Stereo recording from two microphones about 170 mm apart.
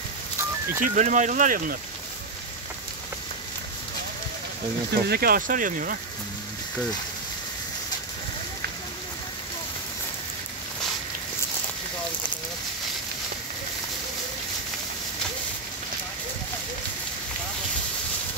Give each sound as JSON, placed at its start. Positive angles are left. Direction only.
{"t": 0.7, "sound": "speech", "side_deg": -50}
{"t": 5.0, "sound": "speech", "side_deg": -65}